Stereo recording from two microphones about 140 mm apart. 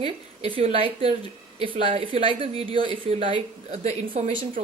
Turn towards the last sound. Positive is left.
turn(degrees=-40)  # may be behind; listen again after turning